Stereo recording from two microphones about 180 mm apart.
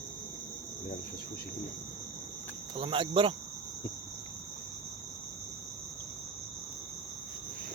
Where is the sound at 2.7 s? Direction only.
30° right (ahead or behind).